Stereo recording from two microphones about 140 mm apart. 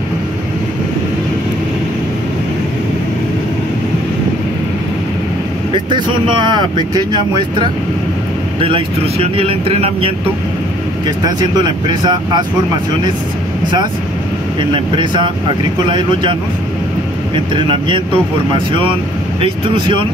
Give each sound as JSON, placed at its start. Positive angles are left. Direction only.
{"t": 5.7, "sound": "speech", "side_deg": -35}
{"t": 11.1, "sound": "speech", "side_deg": -30}
{"t": 14.6, "sound": "speech", "side_deg": -35}
{"t": 17.6, "sound": "speech", "side_deg": -35}